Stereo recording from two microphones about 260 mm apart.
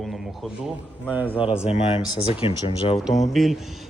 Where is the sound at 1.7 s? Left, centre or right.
Left.